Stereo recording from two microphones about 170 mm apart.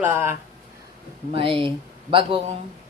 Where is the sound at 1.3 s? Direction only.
30° right (ahead or behind).